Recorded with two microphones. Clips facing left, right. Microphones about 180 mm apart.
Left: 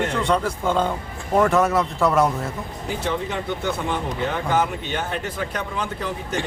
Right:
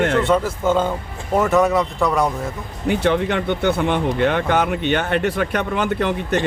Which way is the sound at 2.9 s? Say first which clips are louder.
Right 8 dB; 70° right (ahead or behind).